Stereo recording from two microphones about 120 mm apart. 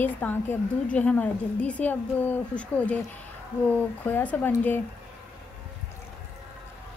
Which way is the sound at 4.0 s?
15° left (ahead or behind).